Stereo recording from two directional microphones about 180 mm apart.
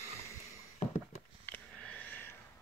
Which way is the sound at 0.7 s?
40° left (ahead or behind).